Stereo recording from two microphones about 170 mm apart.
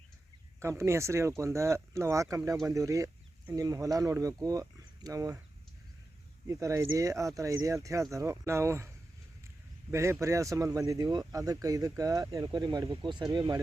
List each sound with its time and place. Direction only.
0.6 s speech: 15° right (ahead or behind)
6.5 s speech: 20° right (ahead or behind)
9.9 s speech: 15° right (ahead or behind)